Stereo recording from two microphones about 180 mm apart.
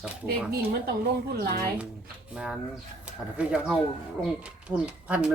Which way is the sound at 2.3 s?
5° right (ahead or behind).